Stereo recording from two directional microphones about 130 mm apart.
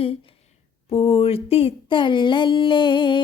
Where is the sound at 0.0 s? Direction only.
45° left (ahead or behind).